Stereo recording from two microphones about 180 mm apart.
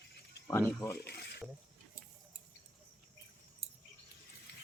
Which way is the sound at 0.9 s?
65° left (ahead or behind).